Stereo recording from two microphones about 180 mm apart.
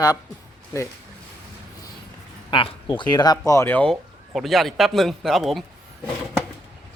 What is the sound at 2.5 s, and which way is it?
Speech, 25° left (ahead or behind).